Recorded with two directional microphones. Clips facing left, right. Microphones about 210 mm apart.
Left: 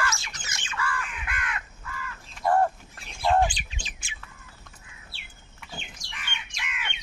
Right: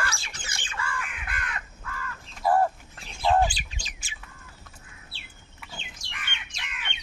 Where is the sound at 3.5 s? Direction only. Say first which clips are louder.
Left 1 dB; 40° right (ahead or behind).